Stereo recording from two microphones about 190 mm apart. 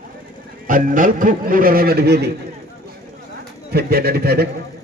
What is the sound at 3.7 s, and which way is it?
Speech, 55° right (ahead or behind).